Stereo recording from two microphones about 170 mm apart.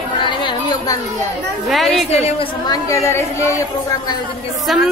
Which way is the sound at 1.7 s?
Centre (ahead or behind).